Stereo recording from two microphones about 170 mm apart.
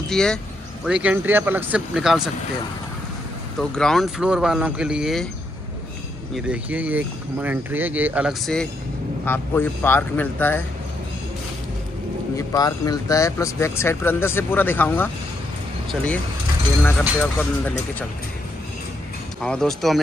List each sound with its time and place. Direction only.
0.1 s speech: 5° left (ahead or behind)
0.8 s speech: 5° right (ahead or behind)
3.5 s speech: 5° left (ahead or behind)
6.3 s speech: 5° right (ahead or behind)
9.2 s speech: 10° left (ahead or behind)
12.4 s speech: 20° left (ahead or behind)
17.2 s speech: 10° left (ahead or behind)
19.4 s speech: 5° left (ahead or behind)